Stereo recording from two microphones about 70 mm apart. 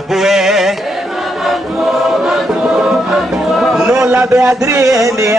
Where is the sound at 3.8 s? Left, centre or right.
Centre.